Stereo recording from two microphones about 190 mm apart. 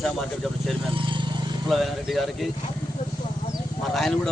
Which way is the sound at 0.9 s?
25° right (ahead or behind).